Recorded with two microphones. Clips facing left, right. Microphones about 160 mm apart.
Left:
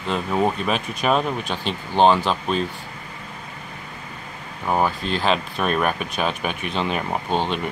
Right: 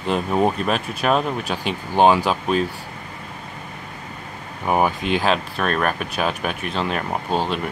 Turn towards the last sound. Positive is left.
turn(degrees=-5)  # may be behind; listen again after turning